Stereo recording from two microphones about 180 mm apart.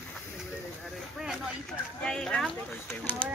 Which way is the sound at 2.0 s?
5° left (ahead or behind).